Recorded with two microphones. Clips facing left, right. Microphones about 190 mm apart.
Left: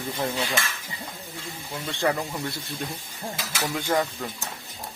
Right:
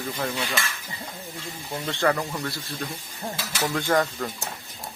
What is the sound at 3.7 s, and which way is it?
Speech, 10° left (ahead or behind).